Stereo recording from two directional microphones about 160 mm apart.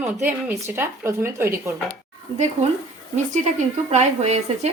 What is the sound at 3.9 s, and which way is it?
Speech, 45° right (ahead or behind).